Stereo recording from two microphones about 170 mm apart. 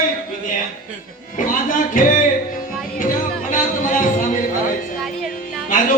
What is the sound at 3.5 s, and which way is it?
Music, 50° left (ahead or behind).